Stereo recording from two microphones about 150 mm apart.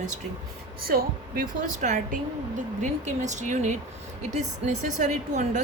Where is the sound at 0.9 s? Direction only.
90° right.